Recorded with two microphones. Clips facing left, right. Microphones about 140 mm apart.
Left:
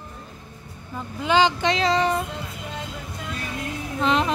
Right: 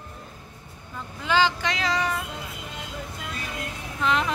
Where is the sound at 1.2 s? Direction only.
20° left (ahead or behind).